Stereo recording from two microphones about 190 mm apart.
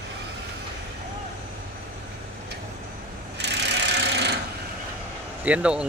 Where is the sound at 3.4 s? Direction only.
65° right (ahead or behind).